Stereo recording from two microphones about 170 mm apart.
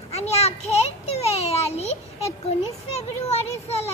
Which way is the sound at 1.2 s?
40° left (ahead or behind).